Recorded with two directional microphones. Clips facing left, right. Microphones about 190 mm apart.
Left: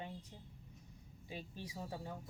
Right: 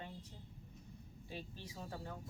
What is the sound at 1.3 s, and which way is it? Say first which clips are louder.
A woman's voice: left 2 dB; 15° left (ahead or behind).